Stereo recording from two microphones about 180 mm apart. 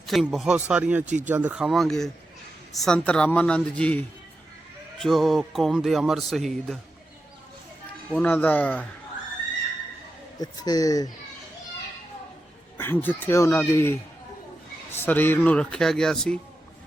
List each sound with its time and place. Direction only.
0.0 s speech: centre (ahead or behind)
1.0 s speech: 45° right (ahead or behind)
1.3 s speech: 10° right (ahead or behind)
8.1 s speech: 10° left (ahead or behind)
10.3 s speech: 20° left (ahead or behind)
12.7 s speech: 10° left (ahead or behind)
14.9 s speech: 10° left (ahead or behind)